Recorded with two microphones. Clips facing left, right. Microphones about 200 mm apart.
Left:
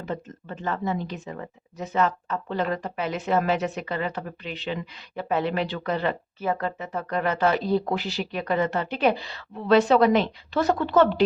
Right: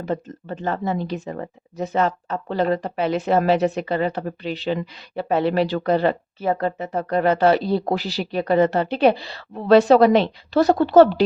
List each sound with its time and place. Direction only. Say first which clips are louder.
0.0 s speech: right 6 dB; 35° right (ahead or behind)